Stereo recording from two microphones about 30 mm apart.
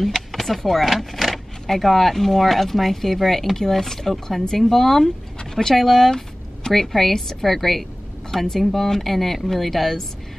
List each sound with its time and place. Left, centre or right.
0.3 s speech: centre
0.8 s speech: centre
5.4 s dog: centre
5.8 s speech: centre